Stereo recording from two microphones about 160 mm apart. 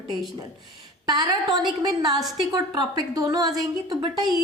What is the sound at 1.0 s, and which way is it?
A woman's voice, 25° right (ahead or behind).